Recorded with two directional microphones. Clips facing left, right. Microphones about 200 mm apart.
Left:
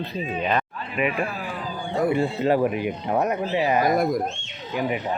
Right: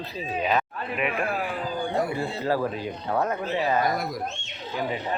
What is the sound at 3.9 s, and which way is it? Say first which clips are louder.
Speech: left 8 dB; 50° left (ahead or behind).